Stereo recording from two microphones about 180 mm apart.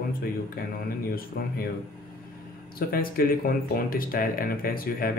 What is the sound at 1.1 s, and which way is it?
Speech, 55° left (ahead or behind).